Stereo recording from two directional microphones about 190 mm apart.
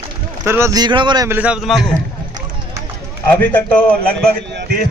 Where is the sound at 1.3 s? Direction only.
5° right (ahead or behind).